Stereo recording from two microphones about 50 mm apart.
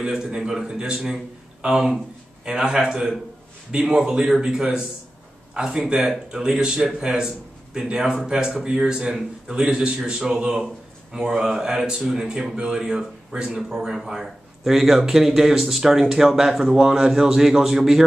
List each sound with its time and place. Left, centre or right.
0.0 s a man's voice: centre
6.8 s a man's voice: centre